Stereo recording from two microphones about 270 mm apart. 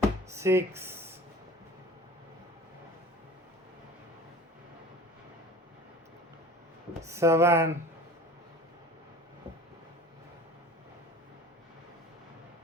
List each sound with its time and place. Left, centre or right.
0.3 s speech: centre
7.1 s speech: centre